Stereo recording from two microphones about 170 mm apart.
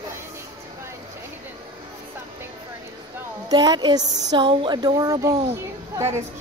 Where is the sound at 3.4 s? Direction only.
25° right (ahead or behind).